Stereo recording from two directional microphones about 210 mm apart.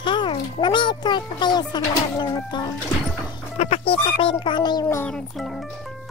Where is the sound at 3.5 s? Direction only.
30° left (ahead or behind).